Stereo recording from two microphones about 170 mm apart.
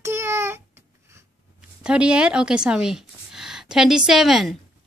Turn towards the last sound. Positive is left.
turn(degrees=0)  # may be behind; listen again after turning